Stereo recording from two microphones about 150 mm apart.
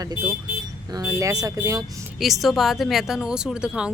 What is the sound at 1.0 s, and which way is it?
Speech, 20° right (ahead or behind).